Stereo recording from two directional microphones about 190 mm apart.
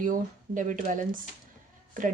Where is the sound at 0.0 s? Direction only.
45° right (ahead or behind).